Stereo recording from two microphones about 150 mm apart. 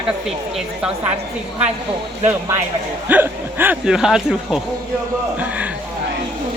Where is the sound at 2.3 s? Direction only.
15° right (ahead or behind).